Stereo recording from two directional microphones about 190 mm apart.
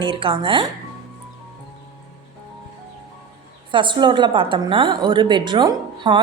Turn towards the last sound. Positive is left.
turn(degrees=-25)  # may be behind; listen again after turning